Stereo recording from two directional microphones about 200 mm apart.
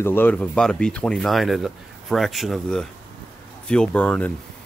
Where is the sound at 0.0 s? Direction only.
10° left (ahead or behind).